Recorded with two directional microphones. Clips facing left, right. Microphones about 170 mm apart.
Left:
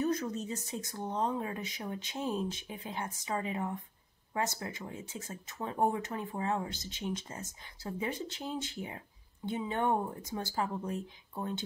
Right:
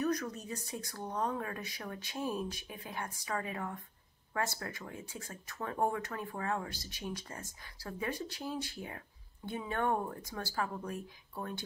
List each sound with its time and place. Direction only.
0.0 s speech: 25° left (ahead or behind)